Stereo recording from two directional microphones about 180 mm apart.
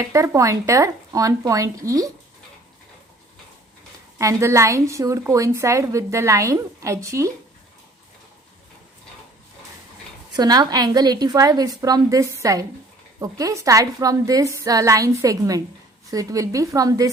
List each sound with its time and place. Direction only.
0.0 s a woman's voice: 15° right (ahead or behind)
4.2 s a woman's voice: 15° right (ahead or behind)
10.3 s a woman's voice: 20° right (ahead or behind)